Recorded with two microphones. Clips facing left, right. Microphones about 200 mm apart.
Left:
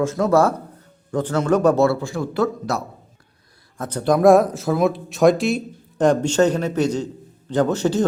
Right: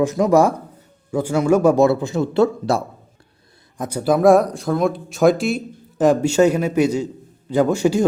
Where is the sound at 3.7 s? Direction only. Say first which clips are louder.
Right 1 dB; 10° right (ahead or behind).